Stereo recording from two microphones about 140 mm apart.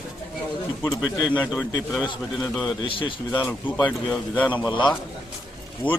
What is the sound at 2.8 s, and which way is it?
Speech, 40° left (ahead or behind).